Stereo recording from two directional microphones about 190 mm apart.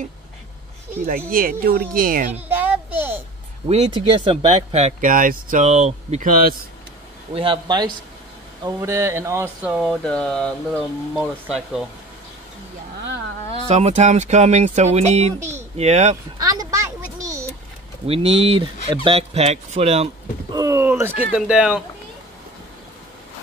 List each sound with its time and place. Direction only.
1.0 s speech: 50° right (ahead or behind)
2.3 s a sound: 10° right (ahead or behind)
3.6 s speech: 30° right (ahead or behind)
7.3 s a man's voice: 25° right (ahead or behind); by 11.8 s 5° right (ahead or behind)
13.7 s speech: 35° right (ahead or behind)
16.3 s a sound: 20° right (ahead or behind)
18.0 s speech: 30° right (ahead or behind)
20.5 s speech: 15° right (ahead or behind)